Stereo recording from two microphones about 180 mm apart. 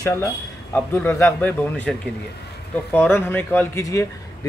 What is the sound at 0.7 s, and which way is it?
A man's voice, 10° left (ahead or behind).